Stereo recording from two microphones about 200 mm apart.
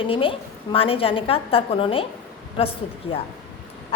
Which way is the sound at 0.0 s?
25° left (ahead or behind).